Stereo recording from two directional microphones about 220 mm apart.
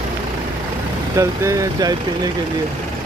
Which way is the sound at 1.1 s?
15° right (ahead or behind).